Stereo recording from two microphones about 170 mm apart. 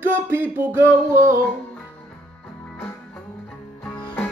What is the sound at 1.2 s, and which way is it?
Music, 50° right (ahead or behind).